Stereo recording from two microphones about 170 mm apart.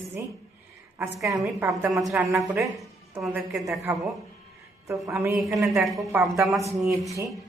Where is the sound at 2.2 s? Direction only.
10° right (ahead or behind).